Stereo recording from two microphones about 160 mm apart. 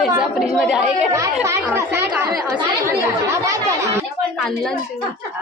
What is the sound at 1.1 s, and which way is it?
Speech, 20° right (ahead or behind).